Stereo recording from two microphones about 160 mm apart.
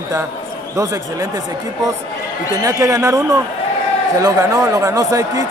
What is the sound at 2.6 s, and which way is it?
Speech, 20° right (ahead or behind).